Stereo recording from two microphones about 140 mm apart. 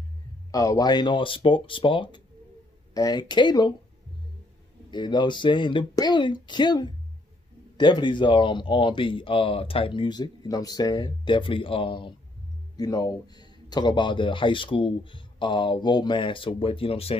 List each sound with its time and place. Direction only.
0.5 s a man's voice: 25° left (ahead or behind)
4.9 s a man's voice: 30° left (ahead or behind)
12.7 s a man's voice: 25° left (ahead or behind); by 17.1 s 45° left (ahead or behind)